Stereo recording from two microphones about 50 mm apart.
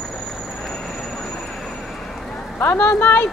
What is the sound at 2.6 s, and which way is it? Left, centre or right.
Speech, left.